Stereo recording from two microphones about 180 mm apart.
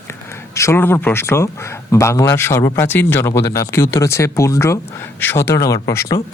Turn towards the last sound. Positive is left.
turn(degrees=15)  # may be behind; listen again after turning